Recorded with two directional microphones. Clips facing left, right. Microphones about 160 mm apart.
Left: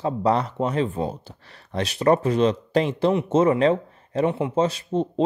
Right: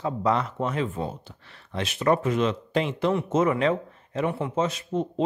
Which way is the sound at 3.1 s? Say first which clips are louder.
Left 4 dB; 25° left (ahead or behind).